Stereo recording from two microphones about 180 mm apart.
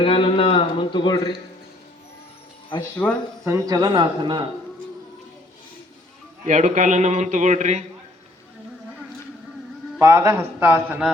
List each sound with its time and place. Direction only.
0.0 s speech: 30° left (ahead or behind)
3.0 s speech: 5° left (ahead or behind)
3.4 s a man's voice: 20° right (ahead or behind)
6.4 s a man's voice: 40° right (ahead or behind)
10.0 s a man's voice: 15° right (ahead or behind)